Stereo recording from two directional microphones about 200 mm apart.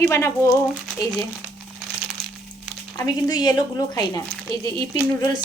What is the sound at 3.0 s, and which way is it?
Speech, 20° left (ahead or behind).